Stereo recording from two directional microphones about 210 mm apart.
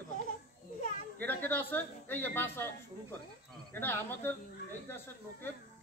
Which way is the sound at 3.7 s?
10° left (ahead or behind).